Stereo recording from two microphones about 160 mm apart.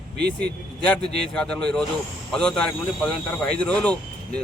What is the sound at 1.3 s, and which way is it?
Speech, 5° left (ahead or behind).